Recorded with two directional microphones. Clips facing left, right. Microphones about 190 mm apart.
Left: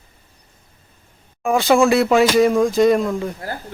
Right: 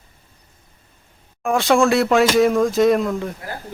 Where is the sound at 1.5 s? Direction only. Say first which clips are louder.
Left 1 dB; centre (ahead or behind).